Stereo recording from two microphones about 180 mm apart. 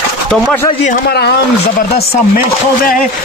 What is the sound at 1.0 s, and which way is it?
Speech, 65° left (ahead or behind).